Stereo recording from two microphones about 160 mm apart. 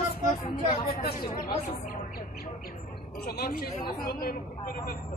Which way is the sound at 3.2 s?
70° left (ahead or behind).